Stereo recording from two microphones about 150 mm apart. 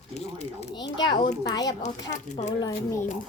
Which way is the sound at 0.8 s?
30° left (ahead or behind).